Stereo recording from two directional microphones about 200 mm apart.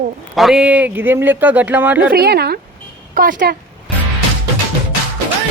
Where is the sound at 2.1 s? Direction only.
55° right (ahead or behind).